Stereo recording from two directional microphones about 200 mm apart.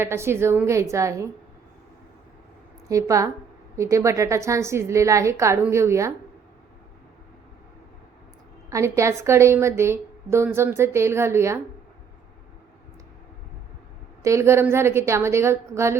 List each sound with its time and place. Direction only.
0.0 s a woman's voice: 10° right (ahead or behind)
2.9 s a woman's voice: 15° right (ahead or behind)
8.7 s a woman's voice: 15° right (ahead or behind)
14.2 s a woman's voice: 15° right (ahead or behind)